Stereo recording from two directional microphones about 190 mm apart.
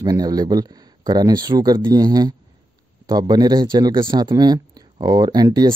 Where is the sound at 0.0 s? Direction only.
20° right (ahead or behind).